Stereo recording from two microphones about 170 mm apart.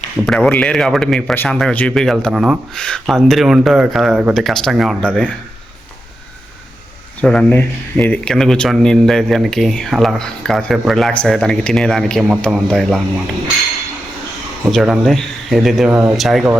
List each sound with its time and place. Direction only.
0.3 s speech: 10° left (ahead or behind)
7.2 s speech: 5° left (ahead or behind)
14.7 s speech: centre (ahead or behind)
15.9 s speech: 10° right (ahead or behind)
16.1 s speech: centre (ahead or behind)